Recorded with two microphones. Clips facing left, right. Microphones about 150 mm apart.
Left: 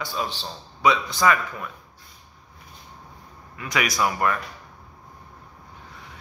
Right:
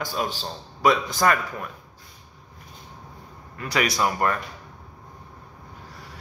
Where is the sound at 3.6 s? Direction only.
30° right (ahead or behind).